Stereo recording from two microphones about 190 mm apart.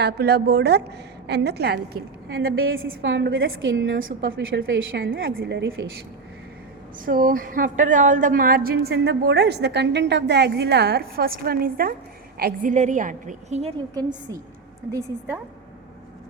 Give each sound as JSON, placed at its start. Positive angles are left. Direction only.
{"t": 0.0, "sound": "a woman's voice", "side_deg": -60}
{"t": 2.4, "sound": "a woman's voice", "side_deg": -90}
{"t": 3.7, "sound": "a woman's voice", "side_deg": -90}
{"t": 5.1, "sound": "a woman's voice", "side_deg": -50}
{"t": 7.0, "sound": "a woman's voice", "side_deg": -50}
{"t": 12.7, "sound": "a woman's voice", "side_deg": -40}